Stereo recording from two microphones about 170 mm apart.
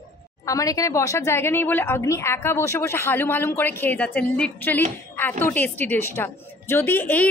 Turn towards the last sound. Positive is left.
turn(degrees=10)  # may be behind; listen again after turning